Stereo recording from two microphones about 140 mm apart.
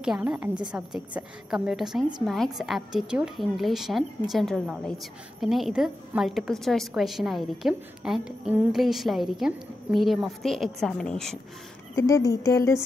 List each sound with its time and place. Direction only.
0.0 s a woman's voice: 5° right (ahead or behind)
11.9 s speech: 25° left (ahead or behind)